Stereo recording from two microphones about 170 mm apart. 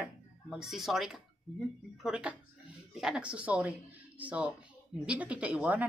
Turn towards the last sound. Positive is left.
turn(degrees=-10)  # may be behind; listen again after turning